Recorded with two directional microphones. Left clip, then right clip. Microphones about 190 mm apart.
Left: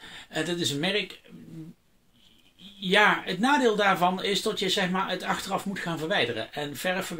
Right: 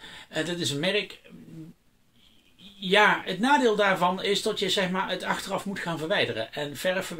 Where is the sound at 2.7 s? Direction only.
Centre (ahead or behind).